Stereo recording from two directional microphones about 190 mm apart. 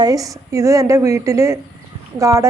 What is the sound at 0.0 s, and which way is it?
A woman's voice, 20° right (ahead or behind).